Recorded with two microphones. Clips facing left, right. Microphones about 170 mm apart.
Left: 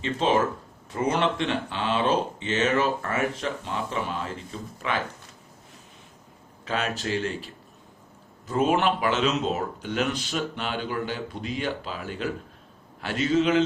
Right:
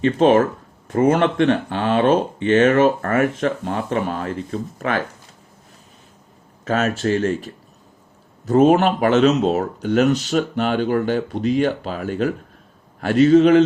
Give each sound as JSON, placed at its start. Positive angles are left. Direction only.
{"t": 0.0, "sound": "speech", "side_deg": -55}
{"t": 6.7, "sound": "speech", "side_deg": -45}